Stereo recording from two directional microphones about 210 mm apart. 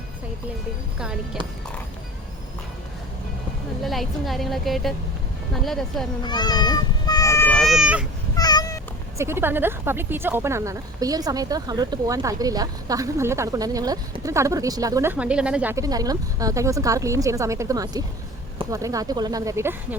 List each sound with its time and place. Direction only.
0.9 s a woman's voice: 5° right (ahead or behind)
3.8 s a woman's voice: centre (ahead or behind)
6.2 s speech: 20° left (ahead or behind); by 8.0 s 5° right (ahead or behind)
8.4 s cat: 20° left (ahead or behind)
9.1 s speech: 10° right (ahead or behind)